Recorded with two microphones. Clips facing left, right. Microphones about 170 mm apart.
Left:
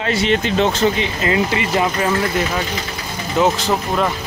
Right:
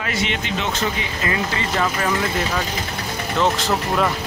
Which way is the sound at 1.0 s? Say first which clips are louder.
Left 6 dB; 20° left (ahead or behind).